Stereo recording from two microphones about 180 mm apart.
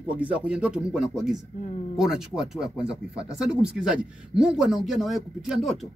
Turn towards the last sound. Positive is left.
turn(degrees=0)  # may be behind; listen again after turning